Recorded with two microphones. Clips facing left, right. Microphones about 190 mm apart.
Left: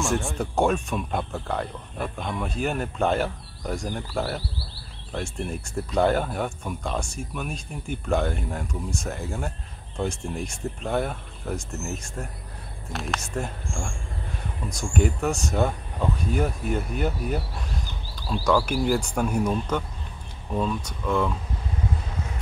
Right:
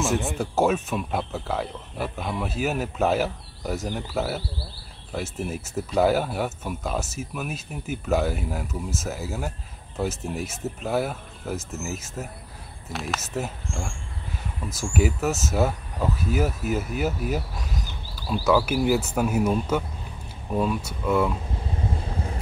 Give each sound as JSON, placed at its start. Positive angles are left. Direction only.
{"t": 0.0, "sound": "speech", "side_deg": 0}
{"t": 21.9, "sound": "vehicle", "side_deg": -30}